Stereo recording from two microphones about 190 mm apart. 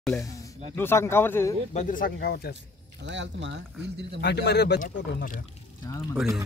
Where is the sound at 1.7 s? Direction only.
40° left (ahead or behind).